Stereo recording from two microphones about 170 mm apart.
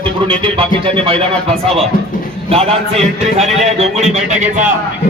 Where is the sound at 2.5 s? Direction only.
35° right (ahead or behind).